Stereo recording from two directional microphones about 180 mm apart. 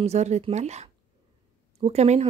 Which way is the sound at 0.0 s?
40° right (ahead or behind).